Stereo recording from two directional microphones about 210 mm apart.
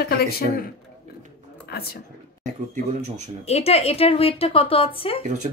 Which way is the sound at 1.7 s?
45° left (ahead or behind).